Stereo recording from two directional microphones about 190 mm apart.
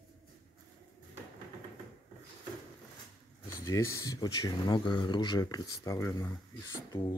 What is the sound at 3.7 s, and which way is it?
Speech, 15° left (ahead or behind).